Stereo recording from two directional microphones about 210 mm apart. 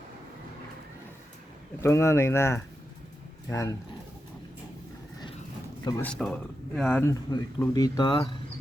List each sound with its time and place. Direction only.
1.8 s speech: 15° left (ahead or behind)
6.0 s speech: 5° left (ahead or behind)
7.3 s speech: 20° left (ahead or behind)